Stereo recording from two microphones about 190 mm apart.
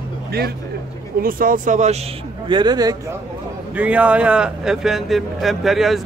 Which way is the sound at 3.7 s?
5° right (ahead or behind).